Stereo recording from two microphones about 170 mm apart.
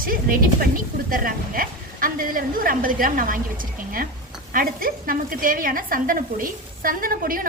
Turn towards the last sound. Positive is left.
turn(degrees=-55)  # may be behind; listen again after turning